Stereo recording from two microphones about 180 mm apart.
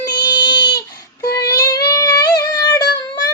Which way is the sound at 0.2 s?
70° left (ahead or behind).